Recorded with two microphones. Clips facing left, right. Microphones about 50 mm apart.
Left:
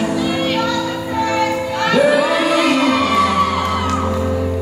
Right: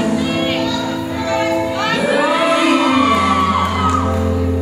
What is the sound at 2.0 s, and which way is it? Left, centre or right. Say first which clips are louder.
Music: even; centre.